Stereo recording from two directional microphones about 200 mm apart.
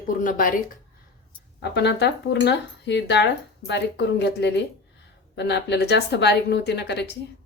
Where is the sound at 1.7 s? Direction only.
55° left (ahead or behind).